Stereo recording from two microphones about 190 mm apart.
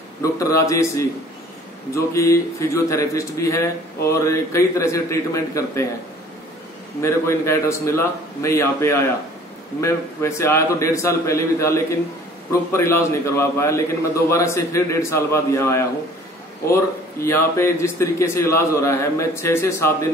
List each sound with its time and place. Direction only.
0.2 s a man's voice: 15° left (ahead or behind)
2.1 s a man's voice: 15° left (ahead or behind)
7.0 s a man's voice: 15° left (ahead or behind)